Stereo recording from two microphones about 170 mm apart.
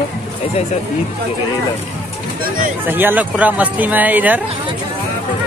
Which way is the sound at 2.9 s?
10° right (ahead or behind).